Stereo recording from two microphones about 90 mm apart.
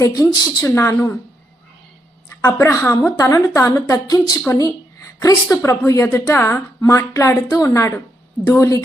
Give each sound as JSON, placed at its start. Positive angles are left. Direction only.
{"t": 0.0, "sound": "a woman's voice", "side_deg": 40}
{"t": 0.6, "sound": "a woman's voice", "side_deg": 30}
{"t": 2.4, "sound": "a woman's voice", "side_deg": 25}
{"t": 3.0, "sound": "a woman's voice", "side_deg": 40}
{"t": 3.9, "sound": "a woman's voice", "side_deg": 50}
{"t": 5.2, "sound": "a woman's voice", "side_deg": 35}